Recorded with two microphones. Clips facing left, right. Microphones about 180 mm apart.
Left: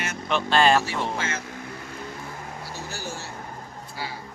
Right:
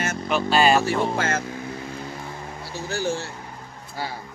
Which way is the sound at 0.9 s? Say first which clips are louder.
Right 6 dB; 60° right (ahead or behind).